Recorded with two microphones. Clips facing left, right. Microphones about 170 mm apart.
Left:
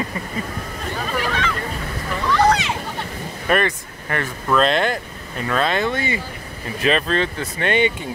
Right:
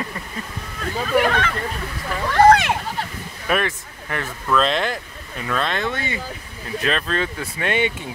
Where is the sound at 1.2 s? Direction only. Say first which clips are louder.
Right 6 dB; 60° right (ahead or behind).